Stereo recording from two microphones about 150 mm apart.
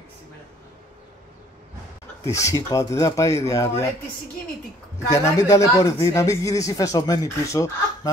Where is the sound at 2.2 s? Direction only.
20° left (ahead or behind).